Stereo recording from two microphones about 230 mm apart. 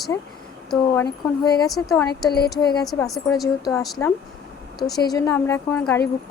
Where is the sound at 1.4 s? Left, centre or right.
Centre.